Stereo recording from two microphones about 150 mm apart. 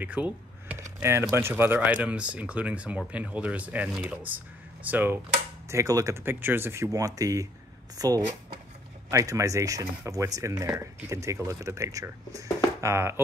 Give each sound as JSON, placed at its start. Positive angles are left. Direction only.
{"t": 0.0, "sound": "computer keyboard", "side_deg": -10}
{"t": 0.9, "sound": "speech", "side_deg": -15}